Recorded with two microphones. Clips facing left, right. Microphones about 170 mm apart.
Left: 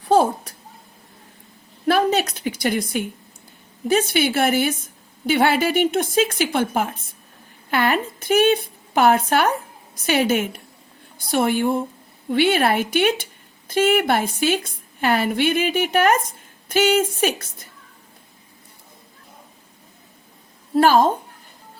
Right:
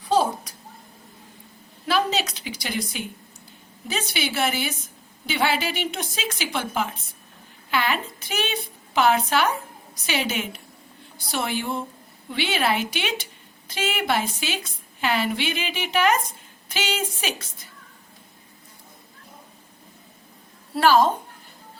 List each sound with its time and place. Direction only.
0.0 s a sound: 65° left (ahead or behind)
1.9 s a woman's voice: 55° left (ahead or behind)
20.7 s a woman's voice: 45° left (ahead or behind)